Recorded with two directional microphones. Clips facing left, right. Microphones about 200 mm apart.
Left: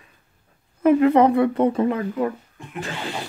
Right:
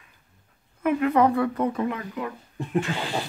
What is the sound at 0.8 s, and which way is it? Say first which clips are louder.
Speech: left 6 dB; 25° left (ahead or behind).